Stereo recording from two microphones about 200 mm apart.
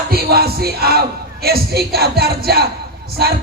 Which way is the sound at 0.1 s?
50° right (ahead or behind).